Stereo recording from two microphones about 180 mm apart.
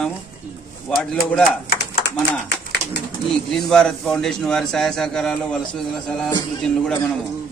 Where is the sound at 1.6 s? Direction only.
60° left (ahead or behind).